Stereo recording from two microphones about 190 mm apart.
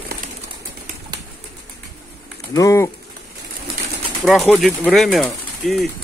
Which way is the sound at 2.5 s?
15° left (ahead or behind).